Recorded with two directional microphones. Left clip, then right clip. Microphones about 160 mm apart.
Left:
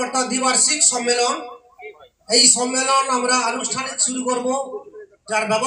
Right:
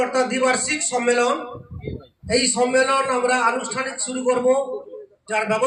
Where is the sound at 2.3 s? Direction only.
15° left (ahead or behind).